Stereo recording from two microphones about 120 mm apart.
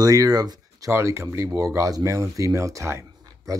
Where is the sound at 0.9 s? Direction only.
20° right (ahead or behind).